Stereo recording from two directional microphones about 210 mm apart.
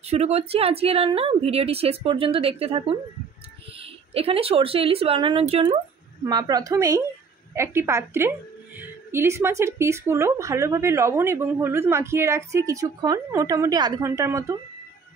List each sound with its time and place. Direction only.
0.0 s a woman's voice: 30° right (ahead or behind); by 14.6 s 15° right (ahead or behind)